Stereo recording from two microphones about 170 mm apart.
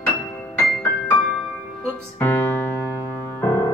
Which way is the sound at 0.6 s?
10° left (ahead or behind).